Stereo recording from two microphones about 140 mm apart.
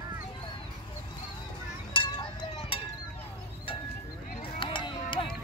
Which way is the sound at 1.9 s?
35° left (ahead or behind).